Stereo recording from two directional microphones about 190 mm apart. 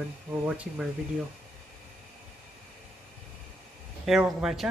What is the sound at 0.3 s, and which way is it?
Speech, 5° right (ahead or behind).